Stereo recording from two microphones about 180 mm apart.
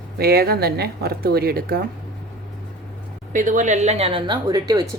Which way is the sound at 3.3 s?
45° right (ahead or behind).